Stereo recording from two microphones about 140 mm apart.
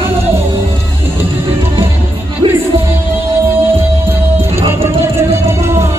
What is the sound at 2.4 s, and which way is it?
Music, 35° right (ahead or behind).